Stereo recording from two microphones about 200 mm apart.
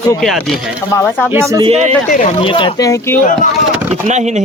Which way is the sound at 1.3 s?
15° right (ahead or behind).